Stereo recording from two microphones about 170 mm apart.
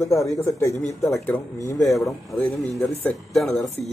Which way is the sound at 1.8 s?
Centre (ahead or behind).